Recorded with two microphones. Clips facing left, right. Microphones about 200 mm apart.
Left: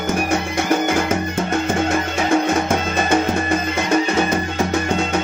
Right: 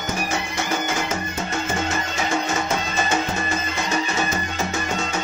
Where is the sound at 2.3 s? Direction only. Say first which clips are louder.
Left 7 dB; 55° left (ahead or behind).